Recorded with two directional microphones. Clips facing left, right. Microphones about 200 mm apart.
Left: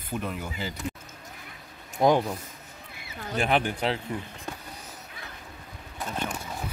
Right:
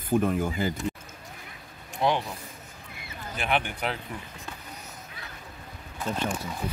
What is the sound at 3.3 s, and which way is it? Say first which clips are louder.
Speech: left 4 dB; 35° left (ahead or behind).